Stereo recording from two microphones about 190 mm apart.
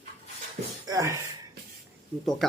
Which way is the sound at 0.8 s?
20° right (ahead or behind).